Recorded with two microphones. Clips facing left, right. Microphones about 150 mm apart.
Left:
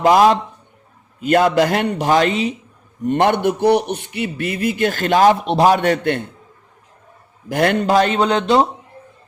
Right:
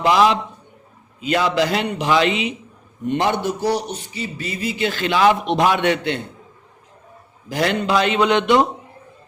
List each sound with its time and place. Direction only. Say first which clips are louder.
0.0 s a man's voice: left 4 dB; 45° left (ahead or behind)
3.1 s a man's voice: left 4 dB; 55° left (ahead or behind)
7.4 s a man's voice: left 4 dB; 55° left (ahead or behind); by 8.6 s 30° left (ahead or behind)